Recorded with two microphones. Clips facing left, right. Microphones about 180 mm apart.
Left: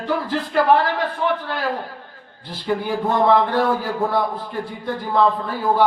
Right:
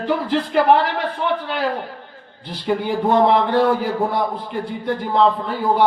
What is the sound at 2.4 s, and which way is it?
A man's voice, 20° right (ahead or behind).